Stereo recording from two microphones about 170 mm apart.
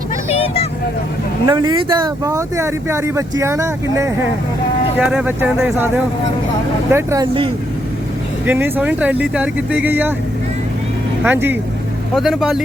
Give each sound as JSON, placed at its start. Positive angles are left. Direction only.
{"t": 0.3, "sound": "vehicle", "side_deg": 35}
{"t": 1.5, "sound": "speech", "side_deg": -25}
{"t": 6.9, "sound": "speech", "side_deg": -20}
{"t": 8.4, "sound": "speech", "side_deg": -10}
{"t": 11.2, "sound": "speech", "side_deg": -10}
{"t": 12.1, "sound": "speech", "side_deg": 0}